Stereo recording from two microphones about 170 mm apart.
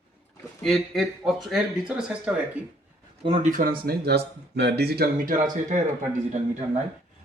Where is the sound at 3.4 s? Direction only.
50° right (ahead or behind).